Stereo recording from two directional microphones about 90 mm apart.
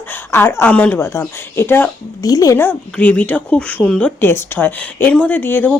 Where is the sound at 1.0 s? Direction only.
25° left (ahead or behind).